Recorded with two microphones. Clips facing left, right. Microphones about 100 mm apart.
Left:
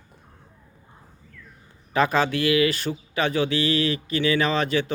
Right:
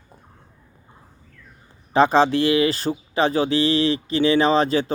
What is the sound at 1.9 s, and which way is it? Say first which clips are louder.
Speech: right 5 dB; 30° right (ahead or behind).